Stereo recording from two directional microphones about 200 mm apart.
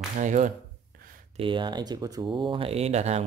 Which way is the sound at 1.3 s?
25° right (ahead or behind).